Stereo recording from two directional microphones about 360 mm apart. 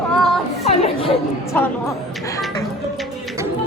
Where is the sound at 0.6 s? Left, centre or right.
Centre.